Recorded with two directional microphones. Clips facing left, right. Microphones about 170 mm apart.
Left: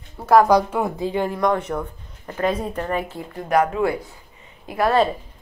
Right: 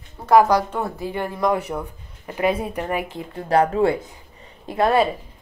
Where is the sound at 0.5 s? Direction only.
10° left (ahead or behind).